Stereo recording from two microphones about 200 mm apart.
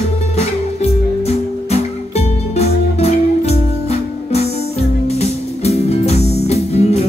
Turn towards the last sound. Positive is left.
turn(degrees=30)  # may be behind; listen again after turning